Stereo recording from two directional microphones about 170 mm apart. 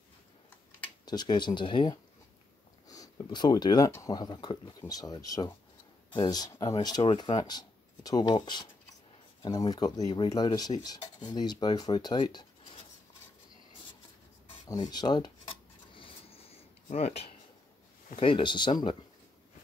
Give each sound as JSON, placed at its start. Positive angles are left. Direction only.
{"t": 1.0, "sound": "rub", "side_deg": 25}
{"t": 7.1, "sound": "speech", "side_deg": 25}
{"t": 9.4, "sound": "rub", "side_deg": 25}
{"t": 14.9, "sound": "a sound", "side_deg": 25}
{"t": 18.1, "sound": "rub", "side_deg": 30}